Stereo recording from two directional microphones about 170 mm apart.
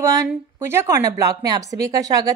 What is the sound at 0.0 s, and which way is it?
A woman's voice, 20° right (ahead or behind).